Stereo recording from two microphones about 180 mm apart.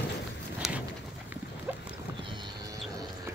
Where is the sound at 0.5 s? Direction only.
5° right (ahead or behind).